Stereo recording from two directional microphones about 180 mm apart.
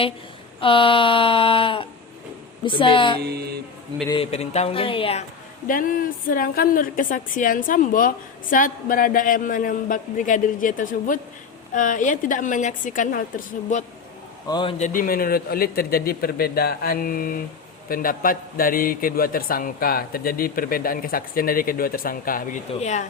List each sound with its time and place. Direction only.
0.6 s a sound: 30° left (ahead or behind)
3.2 s music: 60° right (ahead or behind)
4.1 s speech: 35° left (ahead or behind)
5.6 s a woman's voice: 50° left (ahead or behind)
14.4 s a sound: 25° left (ahead or behind)
14.8 s a man's voice: 50° left (ahead or behind)